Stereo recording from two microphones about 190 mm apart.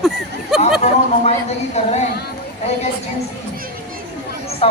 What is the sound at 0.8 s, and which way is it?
Speech, 35° left (ahead or behind).